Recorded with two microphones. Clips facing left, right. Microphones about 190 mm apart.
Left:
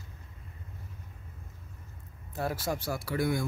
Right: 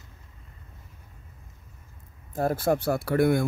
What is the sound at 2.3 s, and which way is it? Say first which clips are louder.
Speech: right 8 dB; 50° right (ahead or behind).